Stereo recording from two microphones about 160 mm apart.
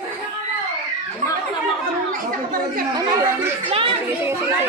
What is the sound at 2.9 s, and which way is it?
Speech, 20° right (ahead or behind).